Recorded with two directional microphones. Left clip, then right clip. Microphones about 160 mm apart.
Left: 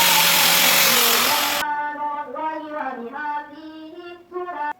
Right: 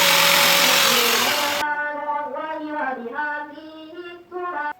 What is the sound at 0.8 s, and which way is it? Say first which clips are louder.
Vehicle: even; 20° left (ahead or behind).